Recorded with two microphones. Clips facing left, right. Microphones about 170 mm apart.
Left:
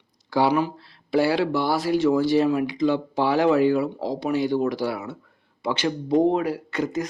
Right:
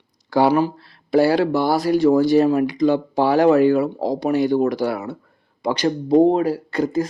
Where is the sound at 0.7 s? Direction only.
50° right (ahead or behind).